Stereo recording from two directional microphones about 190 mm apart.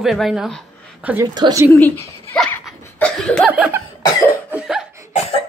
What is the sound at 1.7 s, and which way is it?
Speech, 10° left (ahead or behind).